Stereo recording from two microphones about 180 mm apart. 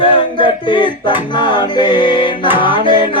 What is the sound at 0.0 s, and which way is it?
Chant, 30° left (ahead or behind).